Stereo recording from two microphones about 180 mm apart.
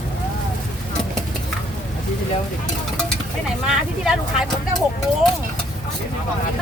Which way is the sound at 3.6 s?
Centre (ahead or behind).